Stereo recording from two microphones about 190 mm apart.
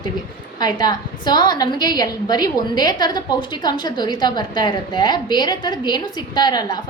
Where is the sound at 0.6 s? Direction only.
20° left (ahead or behind).